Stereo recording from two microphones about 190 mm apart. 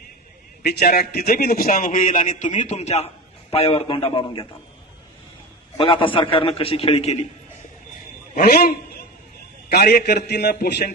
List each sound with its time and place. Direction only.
0.6 s a man's voice: 55° left (ahead or behind); by 4.4 s 25° left (ahead or behind)
5.7 s a man's voice: 25° left (ahead or behind)
8.4 s a man's voice: 55° left (ahead or behind)